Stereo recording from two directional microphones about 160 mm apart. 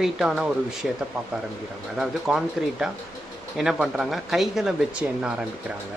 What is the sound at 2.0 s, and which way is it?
Speech, 5° right (ahead or behind).